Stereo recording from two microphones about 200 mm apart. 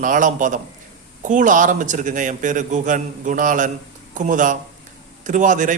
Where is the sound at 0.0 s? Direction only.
40° right (ahead or behind).